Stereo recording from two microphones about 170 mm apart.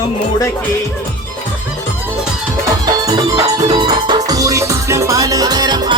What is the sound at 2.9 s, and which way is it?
Music, 20° right (ahead or behind).